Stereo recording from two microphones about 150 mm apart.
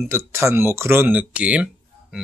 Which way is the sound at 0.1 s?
20° right (ahead or behind).